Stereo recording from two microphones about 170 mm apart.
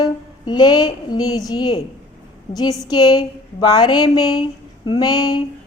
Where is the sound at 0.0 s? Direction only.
25° left (ahead or behind).